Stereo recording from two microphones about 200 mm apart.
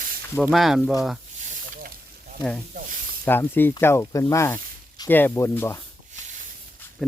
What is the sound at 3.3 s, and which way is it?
Speech, 10° left (ahead or behind).